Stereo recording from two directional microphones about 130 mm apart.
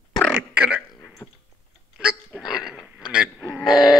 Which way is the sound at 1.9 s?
5° right (ahead or behind).